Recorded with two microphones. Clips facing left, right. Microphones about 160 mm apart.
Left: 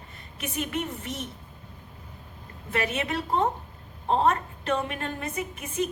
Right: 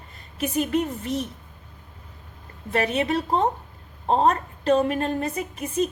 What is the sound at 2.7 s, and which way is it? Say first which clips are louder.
A woman's voice: right 5 dB; 35° right (ahead or behind).